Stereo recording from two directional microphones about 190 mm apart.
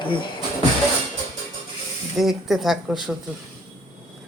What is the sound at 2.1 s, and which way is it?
Speech, centre (ahead or behind).